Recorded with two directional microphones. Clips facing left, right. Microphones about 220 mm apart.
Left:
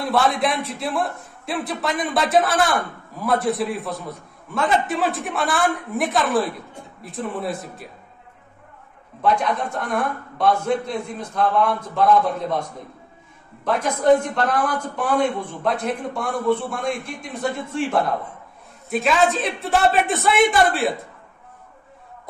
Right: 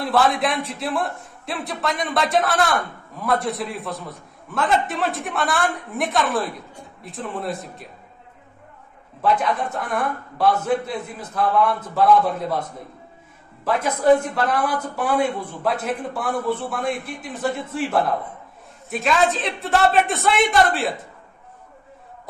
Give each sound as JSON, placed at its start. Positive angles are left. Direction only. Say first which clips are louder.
{"t": 0.0, "sound": "a man's voice", "louder": "even", "side_deg": 0}
{"t": 9.2, "sound": "a man's voice", "louder": "even", "side_deg": -5}
{"t": 13.7, "sound": "a woman's voice", "louder": "even", "side_deg": -5}